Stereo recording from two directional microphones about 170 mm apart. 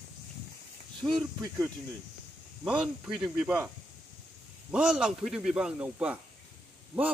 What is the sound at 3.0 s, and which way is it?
Speech, centre (ahead or behind).